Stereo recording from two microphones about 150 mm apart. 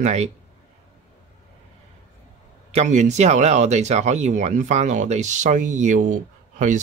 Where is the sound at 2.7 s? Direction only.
50° right (ahead or behind).